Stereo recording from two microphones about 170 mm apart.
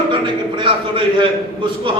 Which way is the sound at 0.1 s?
30° right (ahead or behind).